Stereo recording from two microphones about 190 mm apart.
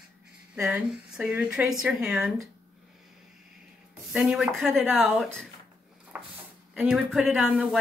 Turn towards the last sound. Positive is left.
turn(degrees=0)  # may be behind; listen again after turning